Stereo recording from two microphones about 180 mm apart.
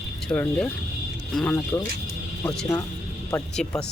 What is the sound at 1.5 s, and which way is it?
Speech, 15° left (ahead or behind).